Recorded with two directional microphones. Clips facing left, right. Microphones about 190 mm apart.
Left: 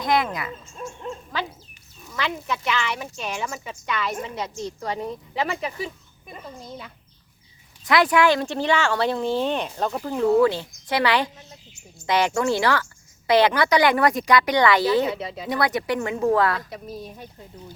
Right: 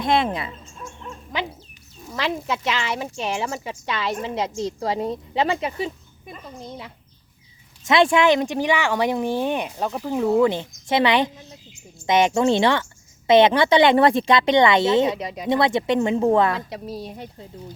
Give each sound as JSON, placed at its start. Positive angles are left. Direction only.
{"t": 0.0, "sound": "a woman's voice", "side_deg": -25}
{"t": 2.1, "sound": "a woman's voice", "side_deg": -30}
{"t": 7.9, "sound": "a woman's voice", "side_deg": -25}
{"t": 15.4, "sound": "a woman's voice", "side_deg": -25}